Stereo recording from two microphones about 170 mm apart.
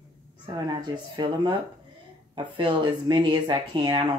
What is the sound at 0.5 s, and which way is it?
Speech, 25° right (ahead or behind).